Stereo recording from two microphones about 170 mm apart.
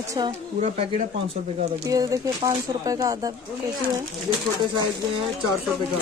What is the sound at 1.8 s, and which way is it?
Speech, 20° right (ahead or behind).